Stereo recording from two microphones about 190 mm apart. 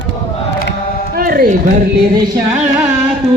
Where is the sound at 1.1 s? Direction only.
50° right (ahead or behind).